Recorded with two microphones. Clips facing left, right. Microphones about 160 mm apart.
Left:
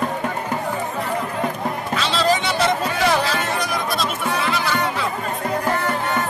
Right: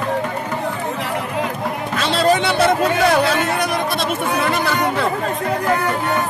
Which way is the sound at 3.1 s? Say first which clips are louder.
Right 4 dB; 60° right (ahead or behind).